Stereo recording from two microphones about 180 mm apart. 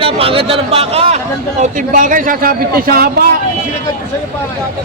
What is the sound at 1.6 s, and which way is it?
A man's voice, 45° right (ahead or behind).